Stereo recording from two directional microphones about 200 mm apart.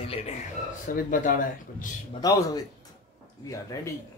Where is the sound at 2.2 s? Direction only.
15° left (ahead or behind).